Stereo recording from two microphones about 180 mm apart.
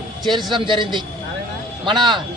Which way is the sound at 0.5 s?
25° right (ahead or behind).